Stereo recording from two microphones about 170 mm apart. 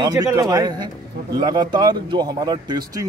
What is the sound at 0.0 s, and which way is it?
Speech, 20° right (ahead or behind).